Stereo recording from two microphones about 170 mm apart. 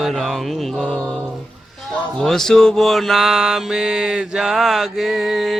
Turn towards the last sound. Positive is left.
turn(degrees=0)  # may be behind; listen again after turning